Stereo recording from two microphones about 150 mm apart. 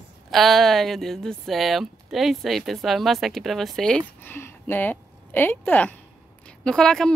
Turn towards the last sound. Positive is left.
turn(degrees=5)  # may be behind; listen again after turning